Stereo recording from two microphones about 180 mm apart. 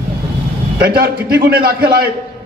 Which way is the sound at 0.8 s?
60° right (ahead or behind).